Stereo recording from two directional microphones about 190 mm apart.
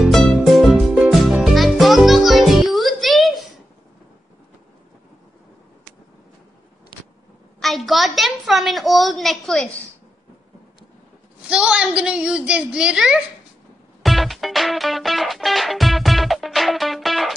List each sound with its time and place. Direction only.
0.0 s music: centre (ahead or behind)
6.9 s vehicle: 25° left (ahead or behind)
7.6 s a sound: centre (ahead or behind)
11.4 s a woman's voice: 5° right (ahead or behind)
14.0 s music: centre (ahead or behind)